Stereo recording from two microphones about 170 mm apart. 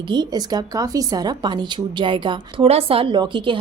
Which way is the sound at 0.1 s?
25° right (ahead or behind).